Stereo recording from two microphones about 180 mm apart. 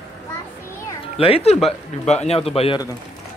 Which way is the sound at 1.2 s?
35° left (ahead or behind).